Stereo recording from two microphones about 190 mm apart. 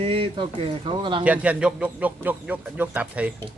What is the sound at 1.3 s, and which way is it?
A man's voice, 5° right (ahead or behind).